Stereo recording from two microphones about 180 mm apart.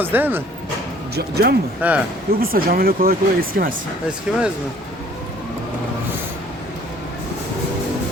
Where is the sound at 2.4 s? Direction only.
55° right (ahead or behind).